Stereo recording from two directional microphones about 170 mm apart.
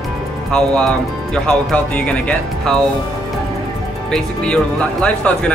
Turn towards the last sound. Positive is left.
turn(degrees=5)  # may be behind; listen again after turning